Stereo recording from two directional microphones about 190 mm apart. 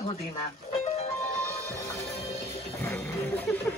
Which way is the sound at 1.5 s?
15° left (ahead or behind).